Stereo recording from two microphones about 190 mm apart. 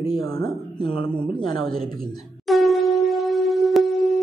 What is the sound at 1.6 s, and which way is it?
Speech, centre (ahead or behind).